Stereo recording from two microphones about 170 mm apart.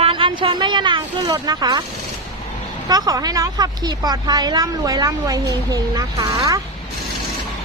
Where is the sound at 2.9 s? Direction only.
20° right (ahead or behind).